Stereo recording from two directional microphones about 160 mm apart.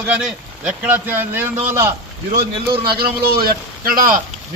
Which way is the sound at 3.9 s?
60° right (ahead or behind).